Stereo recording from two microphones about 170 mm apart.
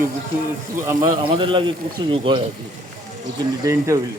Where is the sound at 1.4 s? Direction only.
30° right (ahead or behind).